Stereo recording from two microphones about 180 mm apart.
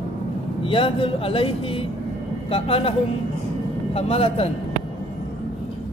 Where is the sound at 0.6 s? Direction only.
30° left (ahead or behind).